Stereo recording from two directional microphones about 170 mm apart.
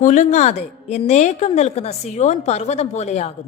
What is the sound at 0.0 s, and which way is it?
A woman's voice, 45° left (ahead or behind).